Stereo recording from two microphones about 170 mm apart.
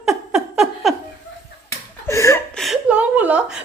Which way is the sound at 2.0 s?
15° left (ahead or behind).